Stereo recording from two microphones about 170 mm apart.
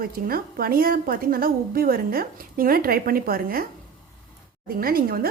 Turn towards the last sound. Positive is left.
turn(degrees=-60)  # may be behind; listen again after turning